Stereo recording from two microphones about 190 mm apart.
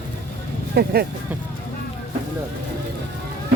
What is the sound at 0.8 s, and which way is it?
Speech, 55° right (ahead or behind).